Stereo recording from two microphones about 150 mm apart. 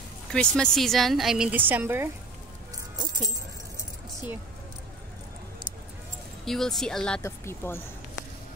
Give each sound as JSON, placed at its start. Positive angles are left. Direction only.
{"t": 0.3, "sound": "a woman's voice", "side_deg": 5}
{"t": 3.0, "sound": "music", "side_deg": -25}
{"t": 6.4, "sound": "a woman's voice", "side_deg": 0}
{"t": 7.2, "sound": "speech", "side_deg": 15}